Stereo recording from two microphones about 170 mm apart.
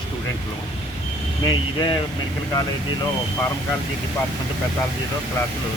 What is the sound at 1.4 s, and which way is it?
Speech, 25° left (ahead or behind).